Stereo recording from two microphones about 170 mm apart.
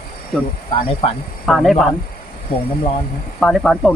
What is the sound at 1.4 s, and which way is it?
Speech, centre (ahead or behind).